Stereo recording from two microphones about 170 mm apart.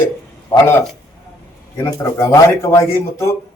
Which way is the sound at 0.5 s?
10° left (ahead or behind).